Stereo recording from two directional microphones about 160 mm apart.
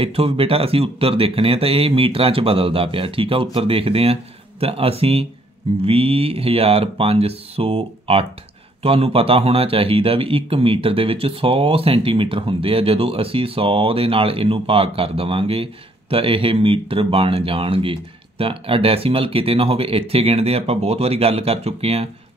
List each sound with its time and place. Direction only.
0.0 s speech: 35° right (ahead or behind)